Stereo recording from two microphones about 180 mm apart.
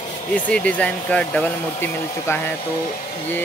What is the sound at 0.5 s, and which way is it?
Speech, 5° left (ahead or behind).